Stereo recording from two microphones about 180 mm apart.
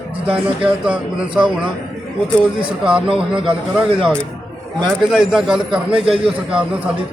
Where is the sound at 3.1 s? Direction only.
30° right (ahead or behind).